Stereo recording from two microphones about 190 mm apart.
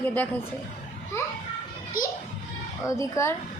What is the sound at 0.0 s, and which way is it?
Speech, 10° left (ahead or behind).